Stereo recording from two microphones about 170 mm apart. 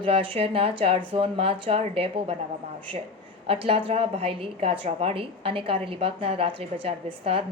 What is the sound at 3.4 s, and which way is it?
A woman's voice, 35° right (ahead or behind).